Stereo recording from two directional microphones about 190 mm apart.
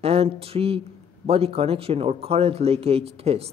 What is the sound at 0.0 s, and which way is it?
A man's voice, 30° right (ahead or behind).